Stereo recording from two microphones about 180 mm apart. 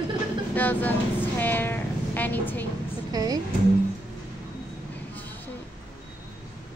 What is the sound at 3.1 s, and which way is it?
Speech, 20° right (ahead or behind).